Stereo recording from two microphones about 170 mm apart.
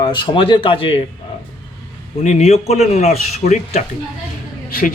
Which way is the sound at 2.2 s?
40° left (ahead or behind).